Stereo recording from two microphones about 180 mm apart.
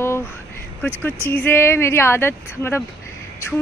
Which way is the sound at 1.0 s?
10° left (ahead or behind).